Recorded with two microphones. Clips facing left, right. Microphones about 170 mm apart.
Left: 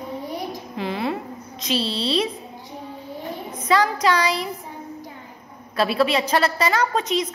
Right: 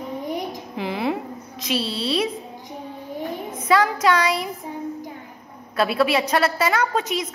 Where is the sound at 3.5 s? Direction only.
Centre (ahead or behind).